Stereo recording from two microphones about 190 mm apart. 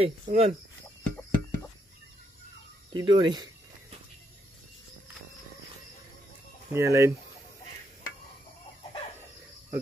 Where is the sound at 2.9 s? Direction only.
25° right (ahead or behind).